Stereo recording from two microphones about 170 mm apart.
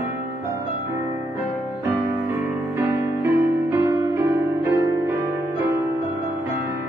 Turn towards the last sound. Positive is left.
turn(degrees=-15)  # may be behind; listen again after turning